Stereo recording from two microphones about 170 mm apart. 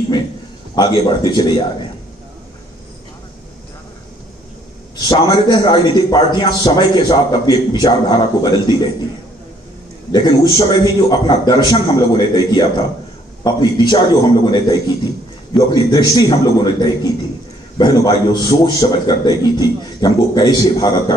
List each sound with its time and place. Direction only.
0.7 s a man's voice: 25° left (ahead or behind)
5.0 s a man's voice: 25° left (ahead or behind)
10.1 s a man's voice: 25° left (ahead or behind)